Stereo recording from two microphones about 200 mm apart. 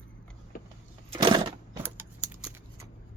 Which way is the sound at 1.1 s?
25° right (ahead or behind).